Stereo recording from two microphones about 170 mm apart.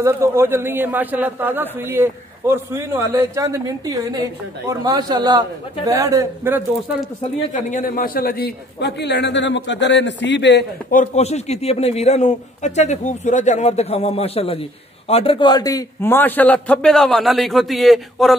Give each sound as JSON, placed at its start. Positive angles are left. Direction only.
{"t": 0.0, "sound": "a man's voice", "side_deg": -15}
{"t": 7.7, "sound": "a man's voice", "side_deg": 55}
{"t": 10.9, "sound": "a man's voice", "side_deg": 45}